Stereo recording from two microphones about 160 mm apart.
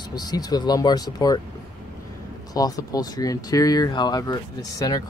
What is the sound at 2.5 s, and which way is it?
Speech, 25° left (ahead or behind).